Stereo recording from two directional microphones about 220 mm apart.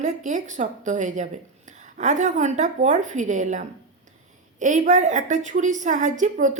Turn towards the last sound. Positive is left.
turn(degrees=-35)  # may be behind; listen again after turning